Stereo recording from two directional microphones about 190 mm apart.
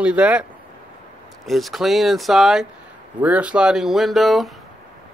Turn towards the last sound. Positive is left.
turn(degrees=0)  # may be behind; listen again after turning